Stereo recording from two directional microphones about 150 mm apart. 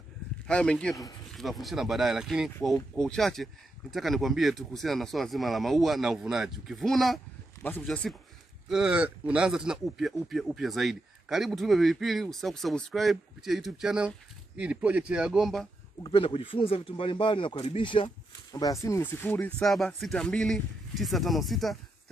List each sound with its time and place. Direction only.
0.5 s speech: 5° left (ahead or behind)
8.6 s speech: 5° right (ahead or behind)
16.0 s speech: 35° left (ahead or behind); by 19.5 s 15° left (ahead or behind)
19.6 s speech: centre (ahead or behind)